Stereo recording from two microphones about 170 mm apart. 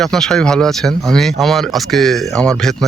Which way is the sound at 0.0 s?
5° left (ahead or behind).